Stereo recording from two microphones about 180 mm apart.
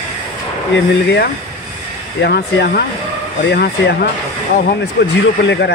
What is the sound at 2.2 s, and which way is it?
Speech, 65° left (ahead or behind).